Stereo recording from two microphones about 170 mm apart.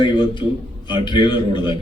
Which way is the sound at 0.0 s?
30° left (ahead or behind).